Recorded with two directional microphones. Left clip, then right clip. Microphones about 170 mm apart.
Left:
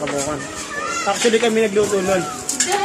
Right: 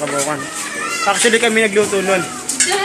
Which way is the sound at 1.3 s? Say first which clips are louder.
Right 3 dB; 5° right (ahead or behind).